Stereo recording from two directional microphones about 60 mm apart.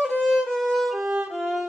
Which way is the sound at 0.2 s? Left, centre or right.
Centre.